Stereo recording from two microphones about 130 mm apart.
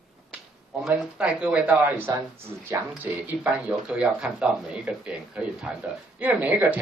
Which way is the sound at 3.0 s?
10° right (ahead or behind).